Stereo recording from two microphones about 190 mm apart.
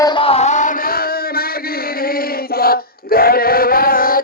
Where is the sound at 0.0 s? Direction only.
25° left (ahead or behind).